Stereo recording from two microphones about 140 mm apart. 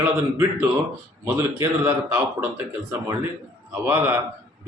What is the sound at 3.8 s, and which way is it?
Speech, 15° right (ahead or behind).